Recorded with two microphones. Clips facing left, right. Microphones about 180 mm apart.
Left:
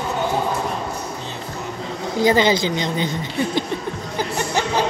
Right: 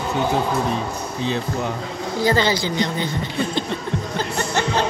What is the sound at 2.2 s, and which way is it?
Speech, 20° left (ahead or behind).